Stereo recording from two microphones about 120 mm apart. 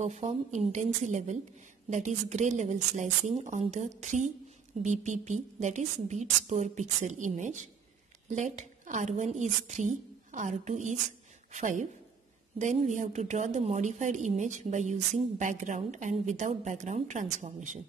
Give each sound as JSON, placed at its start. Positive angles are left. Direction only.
{"t": 0.0, "sound": "a woman's voice", "side_deg": -65}